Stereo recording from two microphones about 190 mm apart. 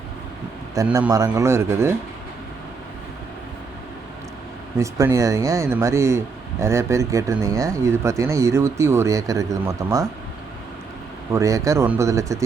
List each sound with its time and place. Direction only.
0.9 s speech: 5° right (ahead or behind)
4.8 s speech: 15° right (ahead or behind)
11.3 s speech: 15° right (ahead or behind)